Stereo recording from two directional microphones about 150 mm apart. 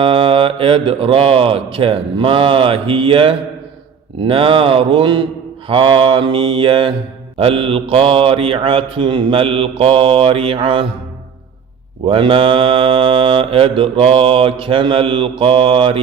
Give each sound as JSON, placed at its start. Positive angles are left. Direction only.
{"t": 0.0, "sound": "mantra", "side_deg": -35}
{"t": 12.0, "sound": "mantra", "side_deg": -35}